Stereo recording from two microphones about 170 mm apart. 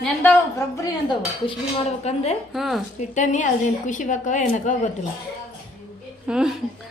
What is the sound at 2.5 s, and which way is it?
Speech, centre (ahead or behind).